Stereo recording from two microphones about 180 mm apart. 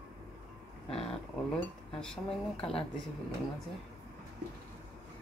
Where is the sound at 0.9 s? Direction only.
30° left (ahead or behind).